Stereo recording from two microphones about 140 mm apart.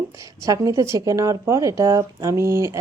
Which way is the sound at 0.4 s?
25° right (ahead or behind).